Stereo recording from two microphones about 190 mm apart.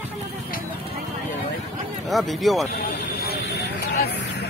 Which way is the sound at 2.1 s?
Centre (ahead or behind).